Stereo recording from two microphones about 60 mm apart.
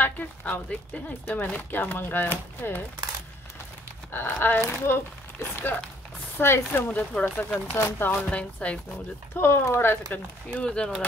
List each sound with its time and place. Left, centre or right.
0.0 s speech: left
4.1 s speech: left
6.9 s speech: left
8.1 s speech: left
9.3 s speech: left
10.1 s speech: left
10.6 s speech: centre